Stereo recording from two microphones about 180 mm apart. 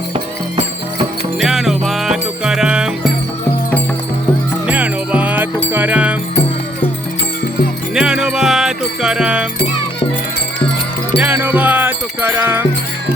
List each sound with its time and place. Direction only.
0.1 s music: 30° right (ahead or behind)
1.4 s music: centre (ahead or behind)
4.6 s music: 5° right (ahead or behind)
7.9 s music: 5° right (ahead or behind)
11.2 s music: 10° right (ahead or behind)